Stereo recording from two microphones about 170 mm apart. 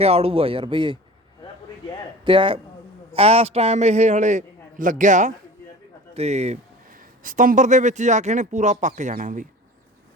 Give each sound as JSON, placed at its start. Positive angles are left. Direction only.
{"t": 0.0, "sound": "a man's voice", "side_deg": -35}
{"t": 2.2, "sound": "a man's voice", "side_deg": -30}
{"t": 7.2, "sound": "a man's voice", "side_deg": -50}